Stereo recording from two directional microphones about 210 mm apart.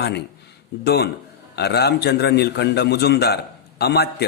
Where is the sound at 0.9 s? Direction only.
50° left (ahead or behind).